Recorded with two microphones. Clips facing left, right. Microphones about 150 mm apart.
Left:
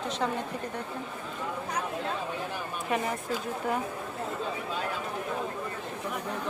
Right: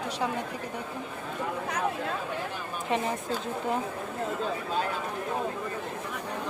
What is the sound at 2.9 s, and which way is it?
Speech, 25° right (ahead or behind).